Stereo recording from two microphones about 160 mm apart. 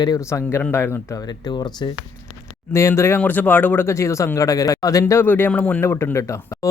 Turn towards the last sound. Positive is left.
turn(degrees=20)  # may be behind; listen again after turning